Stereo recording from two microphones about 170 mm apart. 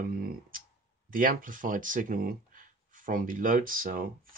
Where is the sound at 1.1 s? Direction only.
55° right (ahead or behind).